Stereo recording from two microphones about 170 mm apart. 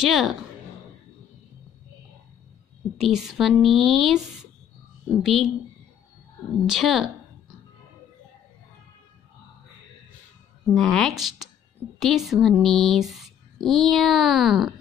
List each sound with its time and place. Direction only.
0.0 s speech: centre (ahead or behind)
2.8 s a sound: centre (ahead or behind)
3.3 s speech: centre (ahead or behind)
5.2 s speech: centre (ahead or behind)
6.6 s speech: centre (ahead or behind)
10.7 s speech: centre (ahead or behind)